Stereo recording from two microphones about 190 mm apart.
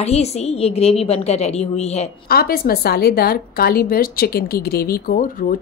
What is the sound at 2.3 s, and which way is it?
A woman's voice, 55° left (ahead or behind).